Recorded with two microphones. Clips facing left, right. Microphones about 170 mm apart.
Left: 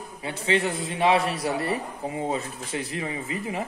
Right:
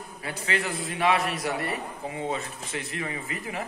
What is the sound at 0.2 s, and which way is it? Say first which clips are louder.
A man's voice: left 5 dB; 25° left (ahead or behind).